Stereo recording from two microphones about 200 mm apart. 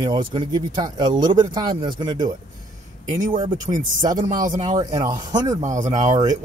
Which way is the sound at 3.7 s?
25° right (ahead or behind).